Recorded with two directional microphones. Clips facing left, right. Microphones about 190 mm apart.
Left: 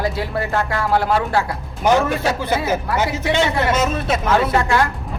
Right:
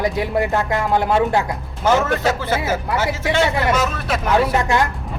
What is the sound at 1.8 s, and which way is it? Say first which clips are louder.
A man's voice: left 1 dB; 15° left (ahead or behind).